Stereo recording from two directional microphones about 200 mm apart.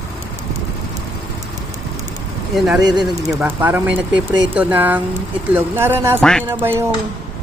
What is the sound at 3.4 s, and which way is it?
Speech, 10° right (ahead or behind).